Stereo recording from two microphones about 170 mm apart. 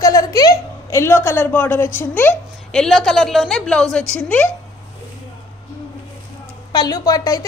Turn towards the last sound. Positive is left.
turn(degrees=20)  # may be behind; listen again after turning